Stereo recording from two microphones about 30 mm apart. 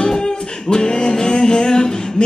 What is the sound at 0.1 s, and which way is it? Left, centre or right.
Music, left.